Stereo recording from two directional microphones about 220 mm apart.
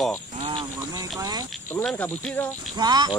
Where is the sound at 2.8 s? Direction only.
20° right (ahead or behind).